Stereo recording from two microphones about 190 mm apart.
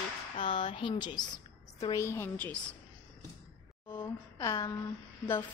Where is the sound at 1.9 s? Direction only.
15° left (ahead or behind).